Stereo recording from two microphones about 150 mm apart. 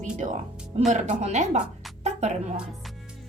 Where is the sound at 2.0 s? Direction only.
50° right (ahead or behind).